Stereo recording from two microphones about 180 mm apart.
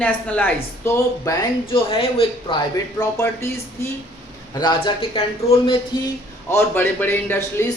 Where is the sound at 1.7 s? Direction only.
30° left (ahead or behind).